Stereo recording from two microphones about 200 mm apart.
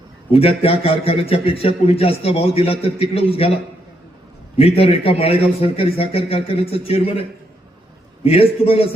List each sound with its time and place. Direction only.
0.3 s a man's voice: 30° left (ahead or behind)
4.5 s a man's voice: 30° left (ahead or behind)